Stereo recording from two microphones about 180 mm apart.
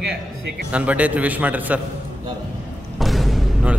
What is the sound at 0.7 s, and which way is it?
A man's voice, 5° right (ahead or behind).